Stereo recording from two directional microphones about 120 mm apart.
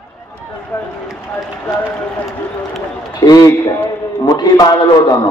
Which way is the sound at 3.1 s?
30° left (ahead or behind).